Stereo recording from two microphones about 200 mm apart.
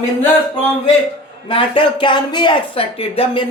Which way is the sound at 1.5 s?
25° left (ahead or behind).